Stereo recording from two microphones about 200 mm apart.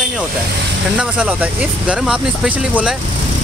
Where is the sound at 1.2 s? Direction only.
5° right (ahead or behind).